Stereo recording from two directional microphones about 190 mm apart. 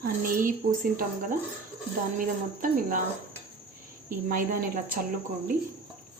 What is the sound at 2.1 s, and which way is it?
Speech, 45° right (ahead or behind).